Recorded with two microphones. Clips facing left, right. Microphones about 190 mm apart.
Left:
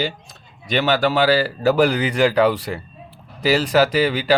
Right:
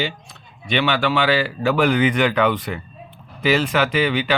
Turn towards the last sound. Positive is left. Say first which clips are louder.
# left 2 dB
turn(degrees=35)  # may be behind; listen again after turning